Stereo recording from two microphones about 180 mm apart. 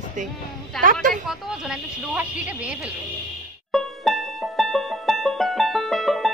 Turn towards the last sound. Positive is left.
turn(degrees=0)  # may be behind; listen again after turning